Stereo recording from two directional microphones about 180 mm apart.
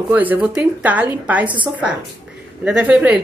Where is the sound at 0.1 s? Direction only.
10° right (ahead or behind).